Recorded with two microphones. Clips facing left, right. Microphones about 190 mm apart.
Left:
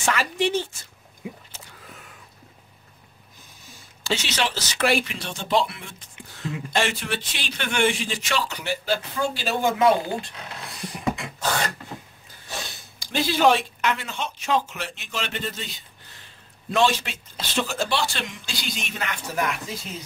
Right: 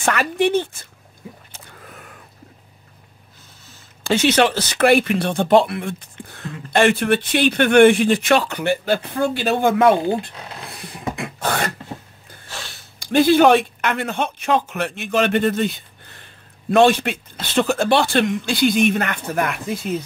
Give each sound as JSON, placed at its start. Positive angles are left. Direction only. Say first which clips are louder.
{"t": 0.0, "sound": "speech", "louder": "right 5 dB", "side_deg": -60}
{"t": 1.5, "sound": "a sound", "louder": "right 3 dB", "side_deg": -55}
{"t": 4.0, "sound": "speech", "louder": "right 10 dB", "side_deg": -55}
{"t": 11.1, "sound": "beatboxing", "louder": "right 4 dB", "side_deg": -55}
{"t": 12.4, "sound": "a sound", "louder": "left 1 dB", "side_deg": 15}
{"t": 13.0, "sound": "speech", "louder": "right 7 dB", "side_deg": -55}